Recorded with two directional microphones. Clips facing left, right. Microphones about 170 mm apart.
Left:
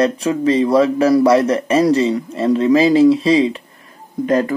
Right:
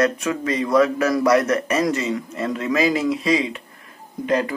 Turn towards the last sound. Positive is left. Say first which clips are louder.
# left 5 dB
turn(degrees=45)  # may be behind; listen again after turning